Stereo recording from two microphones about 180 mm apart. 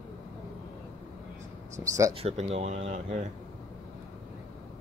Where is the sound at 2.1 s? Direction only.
35° right (ahead or behind).